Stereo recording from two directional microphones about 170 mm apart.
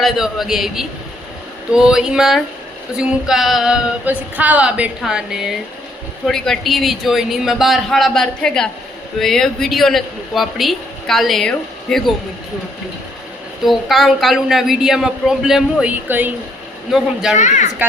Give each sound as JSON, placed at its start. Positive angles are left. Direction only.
{"t": 0.0, "sound": "a woman's voice", "side_deg": 0}
{"t": 13.7, "sound": "a woman's voice", "side_deg": 0}
{"t": 17.3, "sound": "speech", "side_deg": 45}